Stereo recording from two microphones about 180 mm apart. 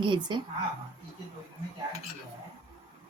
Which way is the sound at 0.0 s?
25° right (ahead or behind).